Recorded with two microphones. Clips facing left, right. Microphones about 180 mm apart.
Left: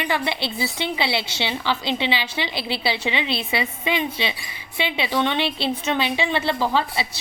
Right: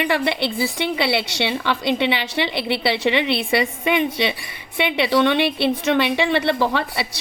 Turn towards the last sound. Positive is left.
turn(degrees=-65)  # may be behind; listen again after turning